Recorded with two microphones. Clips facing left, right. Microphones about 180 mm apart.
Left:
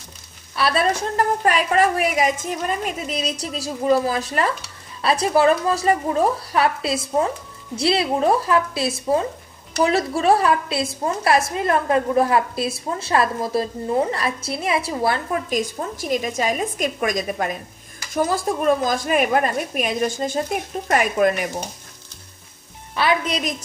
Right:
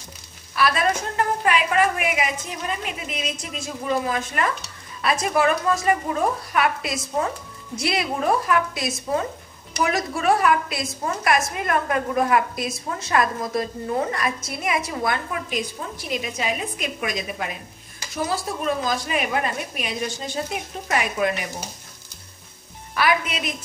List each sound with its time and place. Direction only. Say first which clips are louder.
0.6 s a woman's voice: left 2 dB; 30° left (ahead or behind); by 21.6 s 50° left (ahead or behind)
22.9 s a woman's voice: left 2 dB; 30° left (ahead or behind)